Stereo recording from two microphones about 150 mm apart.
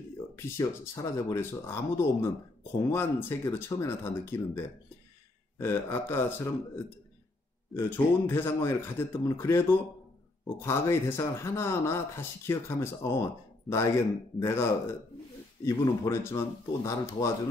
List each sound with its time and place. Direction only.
0.4 s speech: 20° left (ahead or behind)